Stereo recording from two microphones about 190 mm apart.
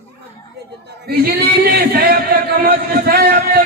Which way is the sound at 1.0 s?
55° right (ahead or behind).